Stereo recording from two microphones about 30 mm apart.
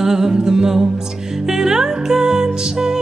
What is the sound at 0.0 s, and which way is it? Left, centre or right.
Music, centre.